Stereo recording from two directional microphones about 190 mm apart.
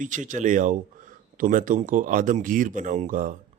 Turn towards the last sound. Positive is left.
turn(degrees=-45)  # may be behind; listen again after turning